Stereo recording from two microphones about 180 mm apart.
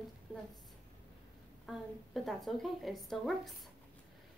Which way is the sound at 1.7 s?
Centre (ahead or behind).